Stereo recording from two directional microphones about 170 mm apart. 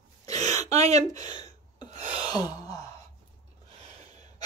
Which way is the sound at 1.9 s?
40° right (ahead or behind).